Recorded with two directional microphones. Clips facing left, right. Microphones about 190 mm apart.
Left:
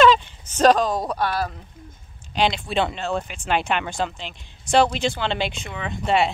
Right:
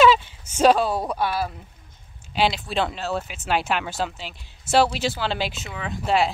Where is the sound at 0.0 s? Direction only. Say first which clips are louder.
Left 1 dB; 10° right (ahead or behind).